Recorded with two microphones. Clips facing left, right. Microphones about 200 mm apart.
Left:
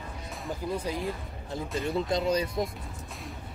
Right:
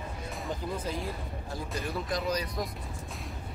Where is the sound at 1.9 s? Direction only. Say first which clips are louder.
Left 5 dB; 25° left (ahead or behind).